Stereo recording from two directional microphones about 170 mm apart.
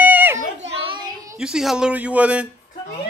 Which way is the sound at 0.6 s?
35° right (ahead or behind).